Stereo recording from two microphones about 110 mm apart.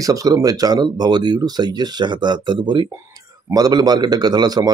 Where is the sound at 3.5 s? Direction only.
35° right (ahead or behind).